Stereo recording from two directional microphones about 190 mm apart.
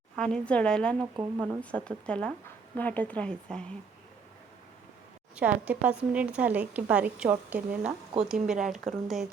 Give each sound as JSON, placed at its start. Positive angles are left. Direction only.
{"t": 0.2, "sound": "speech", "side_deg": 5}
{"t": 1.1, "sound": "a woman's voice", "side_deg": -20}
{"t": 1.7, "sound": "a woman's voice", "side_deg": 5}
{"t": 5.4, "sound": "a woman's voice", "side_deg": -5}
{"t": 7.9, "sound": "a woman's voice", "side_deg": -30}
{"t": 8.3, "sound": "speech", "side_deg": -5}